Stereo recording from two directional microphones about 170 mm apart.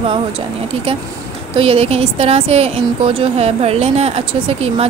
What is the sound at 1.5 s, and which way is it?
A woman's voice, 35° right (ahead or behind).